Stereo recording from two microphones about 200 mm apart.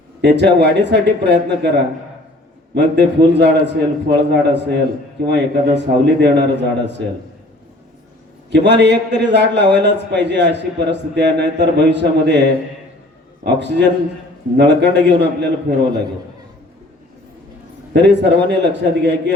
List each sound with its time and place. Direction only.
0.2 s a man's voice: 60° right (ahead or behind)
2.7 s a man's voice: 60° right (ahead or behind)
8.4 s a man's voice: 60° right (ahead or behind)
17.9 s a man's voice: 60° right (ahead or behind)